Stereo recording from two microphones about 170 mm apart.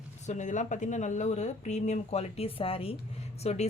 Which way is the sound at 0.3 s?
45° left (ahead or behind).